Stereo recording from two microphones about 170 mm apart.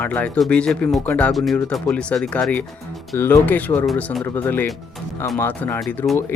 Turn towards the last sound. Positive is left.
turn(degrees=10)  # may be behind; listen again after turning